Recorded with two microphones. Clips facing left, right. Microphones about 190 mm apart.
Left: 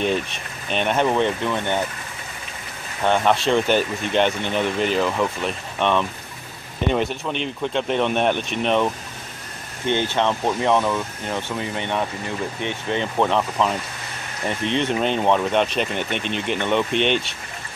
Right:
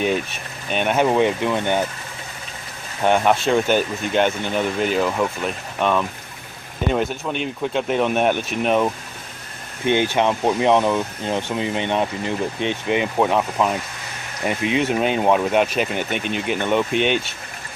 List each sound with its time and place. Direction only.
0.0 s speech: 5° right (ahead or behind)
3.0 s speech: 10° right (ahead or behind)